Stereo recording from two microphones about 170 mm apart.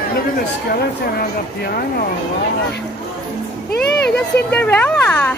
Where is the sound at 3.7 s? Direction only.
75° left (ahead or behind).